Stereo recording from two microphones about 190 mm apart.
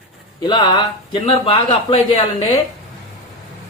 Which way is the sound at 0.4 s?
25° left (ahead or behind).